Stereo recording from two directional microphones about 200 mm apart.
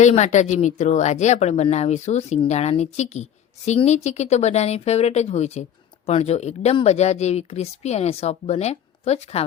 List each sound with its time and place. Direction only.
0.0 s speech: 35° left (ahead or behind)